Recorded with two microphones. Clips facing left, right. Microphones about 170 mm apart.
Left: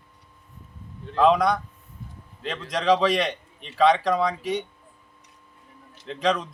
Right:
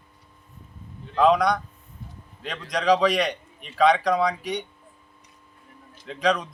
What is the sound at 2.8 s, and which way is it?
A man's voice, centre (ahead or behind).